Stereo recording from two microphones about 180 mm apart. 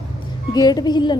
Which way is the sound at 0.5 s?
20° left (ahead or behind).